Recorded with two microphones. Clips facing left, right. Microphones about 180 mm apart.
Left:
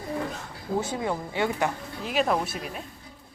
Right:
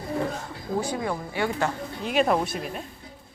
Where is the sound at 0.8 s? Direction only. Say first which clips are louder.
Right 1 dB; 20° left (ahead or behind).